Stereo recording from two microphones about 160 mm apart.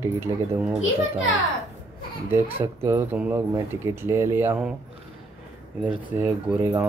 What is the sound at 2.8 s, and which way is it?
Speech, 15° right (ahead or behind).